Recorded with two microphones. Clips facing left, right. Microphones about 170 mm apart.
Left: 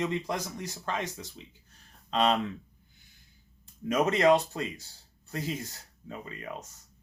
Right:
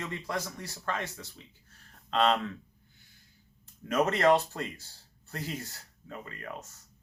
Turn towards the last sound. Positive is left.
turn(degrees=15)  # may be behind; listen again after turning